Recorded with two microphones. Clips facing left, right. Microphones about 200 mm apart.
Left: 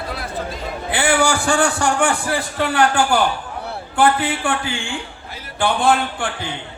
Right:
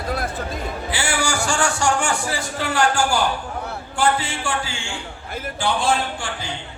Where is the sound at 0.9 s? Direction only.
60° left (ahead or behind).